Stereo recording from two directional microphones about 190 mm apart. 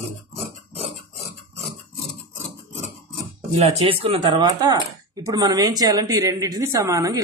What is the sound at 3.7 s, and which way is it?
A woman's voice, 30° right (ahead or behind).